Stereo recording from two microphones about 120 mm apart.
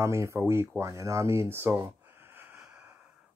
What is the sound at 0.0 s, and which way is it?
Speech, 25° right (ahead or behind).